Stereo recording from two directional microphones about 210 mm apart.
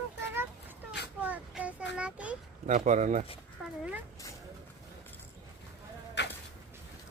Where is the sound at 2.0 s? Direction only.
5° right (ahead or behind).